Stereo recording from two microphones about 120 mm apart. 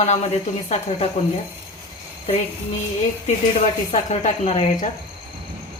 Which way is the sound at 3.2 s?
65° left (ahead or behind).